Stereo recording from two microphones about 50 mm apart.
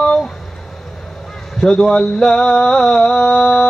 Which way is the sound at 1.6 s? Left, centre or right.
Centre.